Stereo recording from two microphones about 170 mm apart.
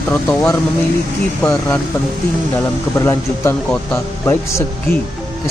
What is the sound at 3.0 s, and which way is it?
Speech, 15° left (ahead or behind).